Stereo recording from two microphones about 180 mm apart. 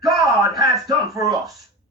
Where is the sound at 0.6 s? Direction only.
20° right (ahead or behind).